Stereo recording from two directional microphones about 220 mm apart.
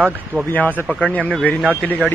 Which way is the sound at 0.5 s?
5° left (ahead or behind).